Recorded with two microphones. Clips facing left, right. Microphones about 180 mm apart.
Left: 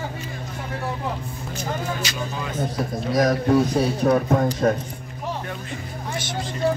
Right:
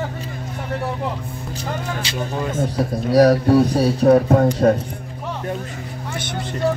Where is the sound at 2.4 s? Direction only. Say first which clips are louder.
Right 5 dB; 45° right (ahead or behind).